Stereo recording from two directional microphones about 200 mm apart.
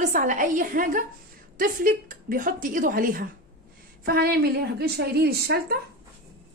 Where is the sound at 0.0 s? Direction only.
40° right (ahead or behind).